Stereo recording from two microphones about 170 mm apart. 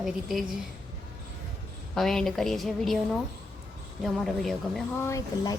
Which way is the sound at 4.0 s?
Centre (ahead or behind).